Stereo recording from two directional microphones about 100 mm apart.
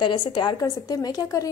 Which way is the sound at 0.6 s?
40° left (ahead or behind).